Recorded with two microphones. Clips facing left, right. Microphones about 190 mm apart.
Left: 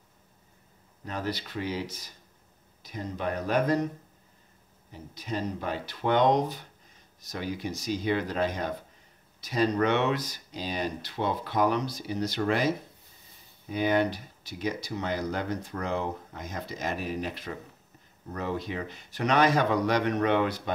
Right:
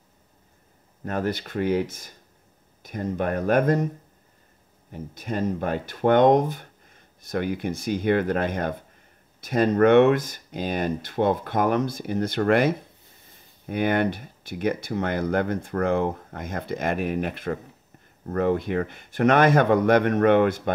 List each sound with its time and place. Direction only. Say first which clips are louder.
1.0 s speech: right 6 dB; 50° right (ahead or behind)
4.9 s speech: right 5 dB; 50° right (ahead or behind)